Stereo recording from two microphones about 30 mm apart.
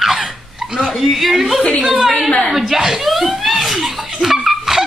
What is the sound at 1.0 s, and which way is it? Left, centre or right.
Speech, centre.